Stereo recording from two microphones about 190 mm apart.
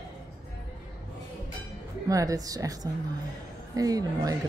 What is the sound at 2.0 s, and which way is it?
Speech, 20° right (ahead or behind).